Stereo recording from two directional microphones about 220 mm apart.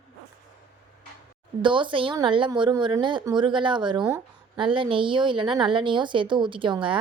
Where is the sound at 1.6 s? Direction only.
20° right (ahead or behind).